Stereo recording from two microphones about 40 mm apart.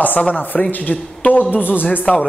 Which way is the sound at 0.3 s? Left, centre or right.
Left.